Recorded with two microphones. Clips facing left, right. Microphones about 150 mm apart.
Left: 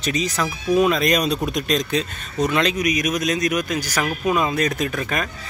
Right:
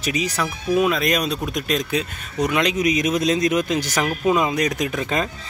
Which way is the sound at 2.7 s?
25° right (ahead or behind).